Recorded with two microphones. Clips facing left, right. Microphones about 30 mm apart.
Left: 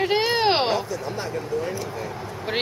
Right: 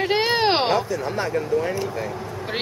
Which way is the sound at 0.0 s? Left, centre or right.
Centre.